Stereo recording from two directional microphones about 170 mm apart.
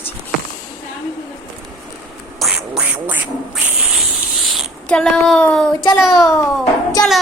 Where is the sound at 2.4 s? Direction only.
5° right (ahead or behind).